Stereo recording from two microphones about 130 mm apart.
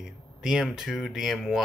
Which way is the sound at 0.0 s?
5° right (ahead or behind).